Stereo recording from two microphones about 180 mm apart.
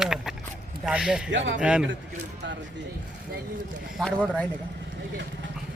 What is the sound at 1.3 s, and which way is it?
Speech, 90° right.